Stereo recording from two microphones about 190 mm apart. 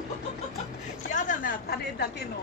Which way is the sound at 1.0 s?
40° left (ahead or behind).